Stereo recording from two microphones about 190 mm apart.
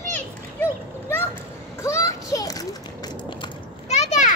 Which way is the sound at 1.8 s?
15° left (ahead or behind).